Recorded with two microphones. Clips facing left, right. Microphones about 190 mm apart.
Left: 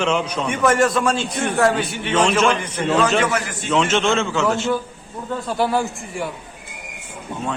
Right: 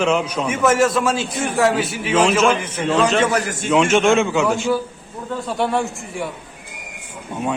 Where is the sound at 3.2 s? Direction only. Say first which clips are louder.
Right 2 dB; 40° right (ahead or behind).